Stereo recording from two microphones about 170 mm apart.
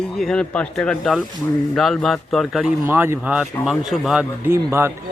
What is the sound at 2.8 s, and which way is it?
Speech, 15° right (ahead or behind).